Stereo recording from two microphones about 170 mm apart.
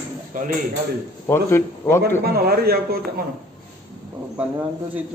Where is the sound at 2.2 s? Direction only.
65° right (ahead or behind).